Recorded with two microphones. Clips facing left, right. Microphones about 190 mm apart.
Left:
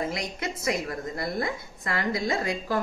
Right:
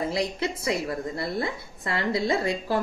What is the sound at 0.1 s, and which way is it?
A woman's voice, 30° right (ahead or behind).